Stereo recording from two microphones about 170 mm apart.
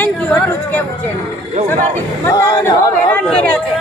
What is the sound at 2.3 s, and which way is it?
Speech, 20° left (ahead or behind).